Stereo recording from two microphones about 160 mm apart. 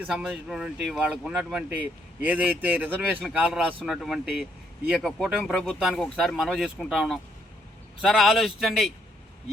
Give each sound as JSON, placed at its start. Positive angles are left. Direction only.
{"t": 0.0, "sound": "speech", "side_deg": -10}